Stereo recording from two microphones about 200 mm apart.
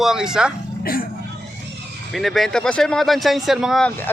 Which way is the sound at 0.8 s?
45° left (ahead or behind).